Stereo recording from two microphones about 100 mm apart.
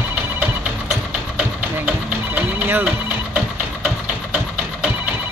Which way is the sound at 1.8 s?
20° right (ahead or behind).